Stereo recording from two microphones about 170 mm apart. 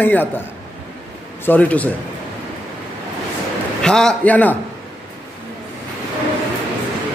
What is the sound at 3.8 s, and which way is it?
Speech, 5° left (ahead or behind).